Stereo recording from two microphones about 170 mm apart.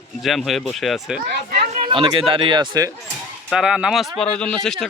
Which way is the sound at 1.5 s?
35° right (ahead or behind).